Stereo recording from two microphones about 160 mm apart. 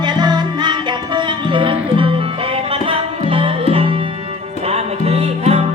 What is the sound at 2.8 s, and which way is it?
Tabla, 35° right (ahead or behind).